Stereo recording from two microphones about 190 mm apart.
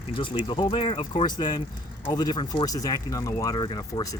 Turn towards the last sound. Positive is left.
turn(degrees=20)  # may be behind; listen again after turning